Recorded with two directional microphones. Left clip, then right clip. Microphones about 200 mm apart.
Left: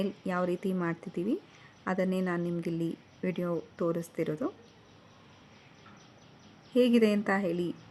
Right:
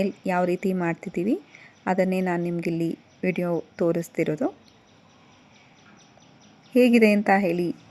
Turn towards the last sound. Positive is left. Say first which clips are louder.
# right 9 dB
turn(degrees=-15)  # may be behind; listen again after turning